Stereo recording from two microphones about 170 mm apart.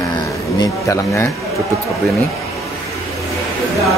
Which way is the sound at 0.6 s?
15° left (ahead or behind).